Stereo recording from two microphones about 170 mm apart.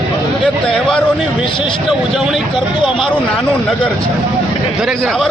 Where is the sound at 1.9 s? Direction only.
5° right (ahead or behind).